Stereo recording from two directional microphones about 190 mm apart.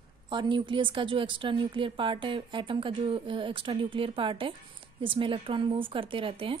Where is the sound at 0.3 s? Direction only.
25° right (ahead or behind).